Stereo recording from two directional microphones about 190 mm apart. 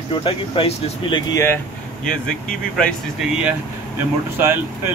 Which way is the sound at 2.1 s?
5° left (ahead or behind).